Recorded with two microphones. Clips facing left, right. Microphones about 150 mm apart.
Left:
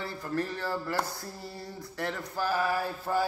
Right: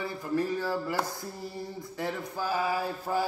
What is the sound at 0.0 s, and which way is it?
Mantra, 15° right (ahead or behind).